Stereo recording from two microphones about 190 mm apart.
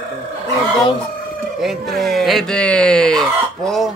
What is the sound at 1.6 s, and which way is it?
Speech, centre (ahead or behind).